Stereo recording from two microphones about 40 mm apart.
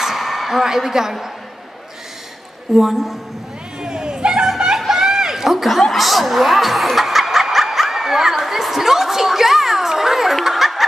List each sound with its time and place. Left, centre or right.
0.0 s a sound: centre
2.7 s a woman's voice: centre
3.8 s a sound: centre
4.7 s snicker: centre
5.8 s speech: centre
10.4 s snicker: centre